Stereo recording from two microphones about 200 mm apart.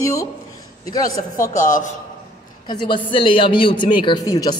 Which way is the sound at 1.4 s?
40° left (ahead or behind).